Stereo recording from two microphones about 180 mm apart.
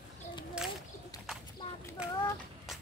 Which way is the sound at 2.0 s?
5° right (ahead or behind).